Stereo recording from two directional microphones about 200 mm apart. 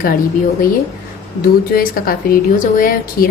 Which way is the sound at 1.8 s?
45° left (ahead or behind).